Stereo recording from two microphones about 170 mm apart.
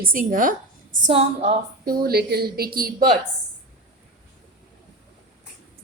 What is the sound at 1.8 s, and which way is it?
A woman's voice, 60° right (ahead or behind).